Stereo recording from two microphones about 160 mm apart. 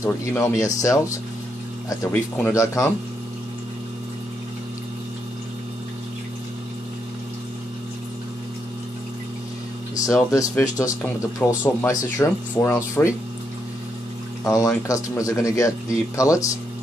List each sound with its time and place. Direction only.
0.0 s speech: 20° left (ahead or behind)
2.3 s speech: 15° left (ahead or behind)
10.0 s speech: 20° left (ahead or behind)
14.4 s speech: 20° left (ahead or behind)